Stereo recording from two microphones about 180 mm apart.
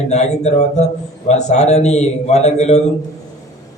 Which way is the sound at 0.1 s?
40° left (ahead or behind).